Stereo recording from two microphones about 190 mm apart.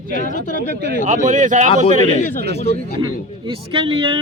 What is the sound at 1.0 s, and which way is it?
Speech, 40° right (ahead or behind).